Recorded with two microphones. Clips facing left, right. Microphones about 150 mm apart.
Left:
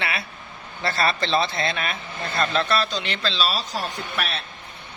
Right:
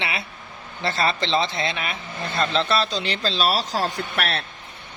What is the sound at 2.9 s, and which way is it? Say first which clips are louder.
Speech: right 2 dB; 35° right (ahead or behind).